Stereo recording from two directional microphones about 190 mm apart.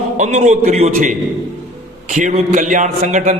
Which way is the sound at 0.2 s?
40° right (ahead or behind).